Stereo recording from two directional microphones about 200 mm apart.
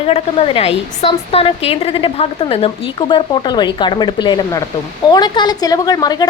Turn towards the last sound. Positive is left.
turn(degrees=20)  # may be behind; listen again after turning